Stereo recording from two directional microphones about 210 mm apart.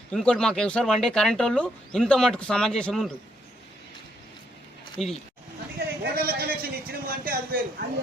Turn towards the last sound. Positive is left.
turn(degrees=-45)  # may be behind; listen again after turning